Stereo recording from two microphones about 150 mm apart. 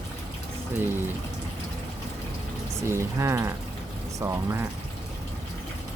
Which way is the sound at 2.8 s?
20° right (ahead or behind).